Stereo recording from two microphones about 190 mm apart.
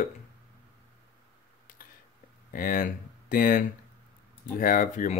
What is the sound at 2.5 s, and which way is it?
Speech, 45° left (ahead or behind).